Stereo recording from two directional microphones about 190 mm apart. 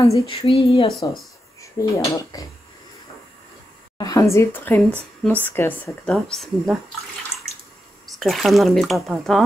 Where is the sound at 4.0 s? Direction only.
20° left (ahead or behind); by 6.8 s centre (ahead or behind).